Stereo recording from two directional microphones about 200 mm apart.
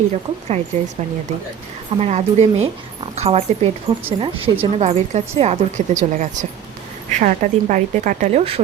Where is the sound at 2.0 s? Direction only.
35° right (ahead or behind).